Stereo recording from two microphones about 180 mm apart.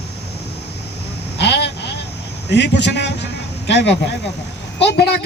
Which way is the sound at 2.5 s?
70° left (ahead or behind).